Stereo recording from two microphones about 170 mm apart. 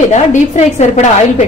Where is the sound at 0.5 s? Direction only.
45° left (ahead or behind).